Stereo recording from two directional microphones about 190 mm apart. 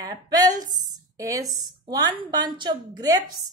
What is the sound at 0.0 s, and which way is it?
A woman's voice, 20° right (ahead or behind).